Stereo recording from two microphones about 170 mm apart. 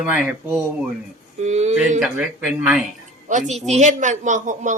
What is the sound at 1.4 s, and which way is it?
Speech, 40° right (ahead or behind).